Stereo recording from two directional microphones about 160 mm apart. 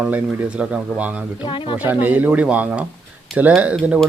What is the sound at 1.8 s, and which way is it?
Speech, 10° right (ahead or behind).